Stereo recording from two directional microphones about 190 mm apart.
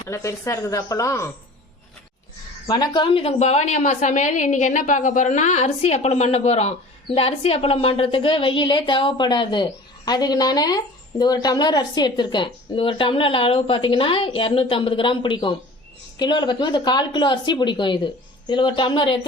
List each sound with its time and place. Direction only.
0.0 s speech: 15° left (ahead or behind)
2.6 s a woman's voice: 20° left (ahead or behind)